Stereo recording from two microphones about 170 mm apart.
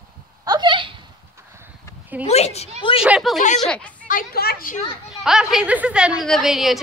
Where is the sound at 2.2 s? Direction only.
40° left (ahead or behind).